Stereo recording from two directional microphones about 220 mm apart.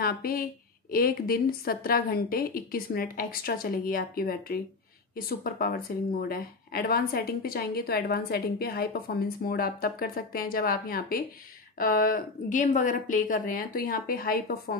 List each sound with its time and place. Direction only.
0.0 s a woman's voice: 45° left (ahead or behind)